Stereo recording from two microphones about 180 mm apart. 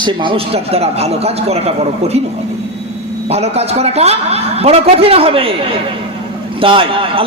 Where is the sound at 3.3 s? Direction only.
35° right (ahead or behind).